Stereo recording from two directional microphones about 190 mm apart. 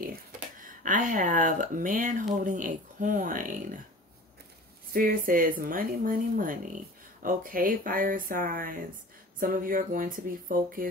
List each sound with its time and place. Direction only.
0.7 s speech: 40° right (ahead or behind)
4.9 s speech: 50° right (ahead or behind)